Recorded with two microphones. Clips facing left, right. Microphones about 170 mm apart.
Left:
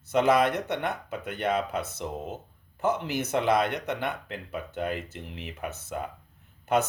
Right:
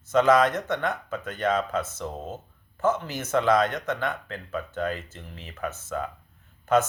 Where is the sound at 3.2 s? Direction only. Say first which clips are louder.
Right 3 dB; 50° right (ahead or behind).